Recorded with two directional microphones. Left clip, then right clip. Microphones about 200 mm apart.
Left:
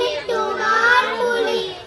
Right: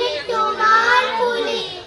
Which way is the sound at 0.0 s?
45° left (ahead or behind).